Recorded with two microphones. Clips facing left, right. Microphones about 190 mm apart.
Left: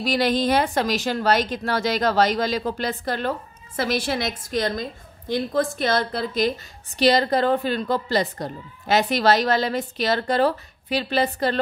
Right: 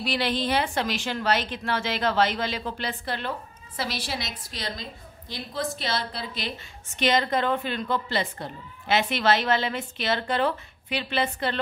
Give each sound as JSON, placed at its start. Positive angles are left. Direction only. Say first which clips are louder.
{"t": 0.0, "sound": "a woman's voice", "louder": "left 6 dB", "side_deg": 45}